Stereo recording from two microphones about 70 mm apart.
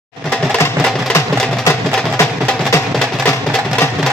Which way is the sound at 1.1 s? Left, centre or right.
Left.